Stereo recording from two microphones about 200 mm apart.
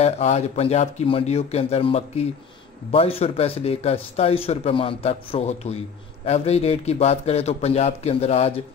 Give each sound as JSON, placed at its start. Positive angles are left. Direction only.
{"t": 0.0, "sound": "a man's voice", "side_deg": 30}